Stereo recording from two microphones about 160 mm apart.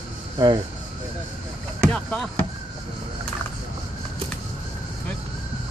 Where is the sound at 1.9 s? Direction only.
5° left (ahead or behind).